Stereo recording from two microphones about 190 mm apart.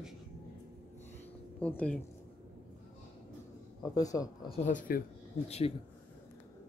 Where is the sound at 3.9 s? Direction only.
20° left (ahead or behind).